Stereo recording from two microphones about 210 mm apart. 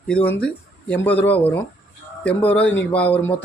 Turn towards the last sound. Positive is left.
turn(degrees=5)  # may be behind; listen again after turning